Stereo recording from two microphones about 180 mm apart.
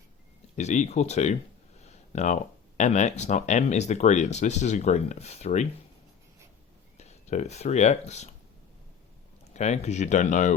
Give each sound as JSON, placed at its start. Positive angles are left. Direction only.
{"t": 0.5, "sound": "speech", "side_deg": 40}
{"t": 6.9, "sound": "speech", "side_deg": 40}
{"t": 9.5, "sound": "speech", "side_deg": 40}